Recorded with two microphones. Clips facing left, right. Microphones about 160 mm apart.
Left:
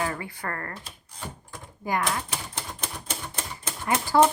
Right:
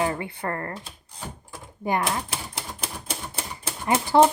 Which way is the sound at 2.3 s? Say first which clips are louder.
Right 1 dB; 5° right (ahead or behind).